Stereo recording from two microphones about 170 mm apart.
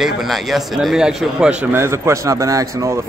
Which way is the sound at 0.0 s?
Centre (ahead or behind).